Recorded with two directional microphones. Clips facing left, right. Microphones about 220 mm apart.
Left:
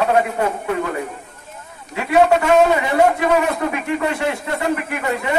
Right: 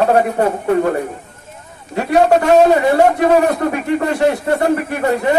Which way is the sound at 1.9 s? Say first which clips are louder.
Right 2 dB; 35° right (ahead or behind).